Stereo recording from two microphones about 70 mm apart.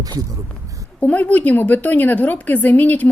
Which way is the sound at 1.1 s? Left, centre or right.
Left.